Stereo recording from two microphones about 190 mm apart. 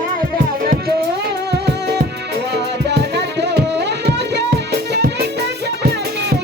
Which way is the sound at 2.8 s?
60° right (ahead or behind).